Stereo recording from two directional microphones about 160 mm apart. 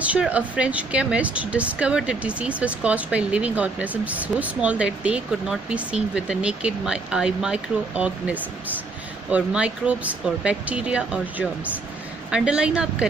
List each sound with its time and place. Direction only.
0.0 s speech: 10° right (ahead or behind)